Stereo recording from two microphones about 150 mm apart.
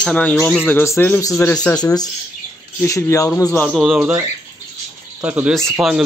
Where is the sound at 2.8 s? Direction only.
20° left (ahead or behind).